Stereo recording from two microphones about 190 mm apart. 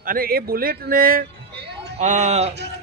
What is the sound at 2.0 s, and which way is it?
Speech, 40° right (ahead or behind).